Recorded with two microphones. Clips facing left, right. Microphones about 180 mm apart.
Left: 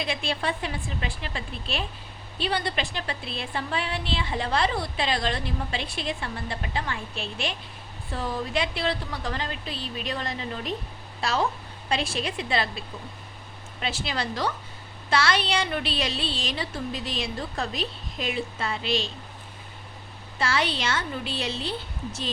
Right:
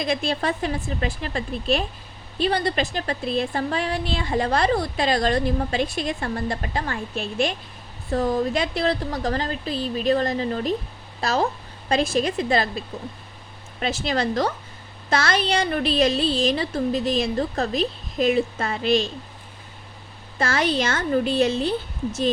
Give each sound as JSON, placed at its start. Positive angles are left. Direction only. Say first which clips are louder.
{"t": 0.0, "sound": "a woman's voice", "louder": "right 5 dB", "side_deg": -40}
{"t": 20.4, "sound": "a woman's voice", "louder": "right 5 dB", "side_deg": -45}